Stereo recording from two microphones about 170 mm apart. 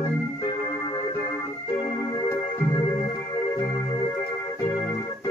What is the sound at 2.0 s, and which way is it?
Music, 15° left (ahead or behind).